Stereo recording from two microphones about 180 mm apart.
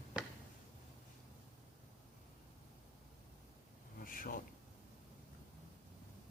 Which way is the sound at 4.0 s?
50° left (ahead or behind).